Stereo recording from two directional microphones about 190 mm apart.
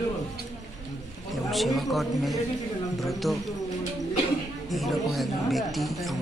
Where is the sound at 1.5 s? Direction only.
Centre (ahead or behind).